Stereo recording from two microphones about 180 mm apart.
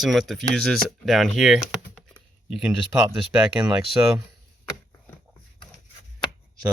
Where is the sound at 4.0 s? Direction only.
15° right (ahead or behind).